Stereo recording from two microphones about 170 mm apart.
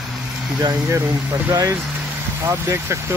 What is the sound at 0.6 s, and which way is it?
Speech, 20° right (ahead or behind).